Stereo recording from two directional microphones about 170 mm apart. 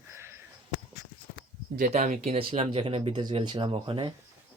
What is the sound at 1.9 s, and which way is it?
Speech, 40° right (ahead or behind).